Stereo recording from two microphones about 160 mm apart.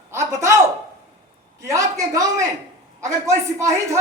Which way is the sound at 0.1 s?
20° right (ahead or behind).